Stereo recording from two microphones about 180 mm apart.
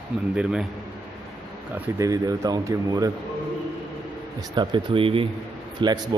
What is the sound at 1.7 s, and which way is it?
Speech, 15° right (ahead or behind).